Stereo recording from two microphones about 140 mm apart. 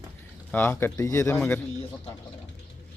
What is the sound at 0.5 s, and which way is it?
Speech, 15° left (ahead or behind).